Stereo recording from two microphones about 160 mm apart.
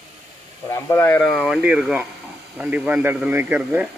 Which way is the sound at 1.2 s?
Centre (ahead or behind).